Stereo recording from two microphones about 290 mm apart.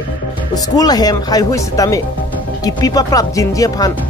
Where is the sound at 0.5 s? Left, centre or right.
Centre.